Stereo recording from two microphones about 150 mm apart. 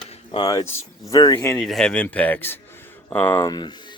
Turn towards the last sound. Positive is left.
turn(degrees=30)  # may be behind; listen again after turning